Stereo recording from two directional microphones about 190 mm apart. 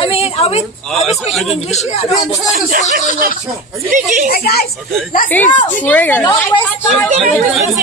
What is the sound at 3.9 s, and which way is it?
Speech, 45° right (ahead or behind).